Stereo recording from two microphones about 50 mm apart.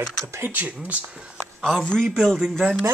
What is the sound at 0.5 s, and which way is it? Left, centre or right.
Speech, right.